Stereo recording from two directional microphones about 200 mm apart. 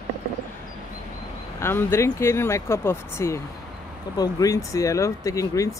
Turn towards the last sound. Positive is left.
turn(degrees=15)  # may be behind; listen again after turning